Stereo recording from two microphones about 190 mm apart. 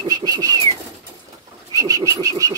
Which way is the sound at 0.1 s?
20° right (ahead or behind).